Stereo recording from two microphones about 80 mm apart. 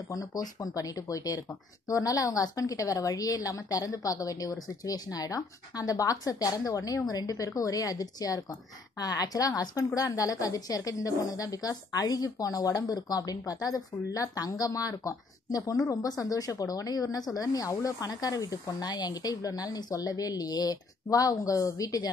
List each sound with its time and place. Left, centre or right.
0.1 s speech: left